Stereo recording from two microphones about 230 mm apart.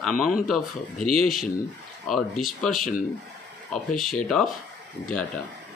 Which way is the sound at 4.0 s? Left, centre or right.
Centre.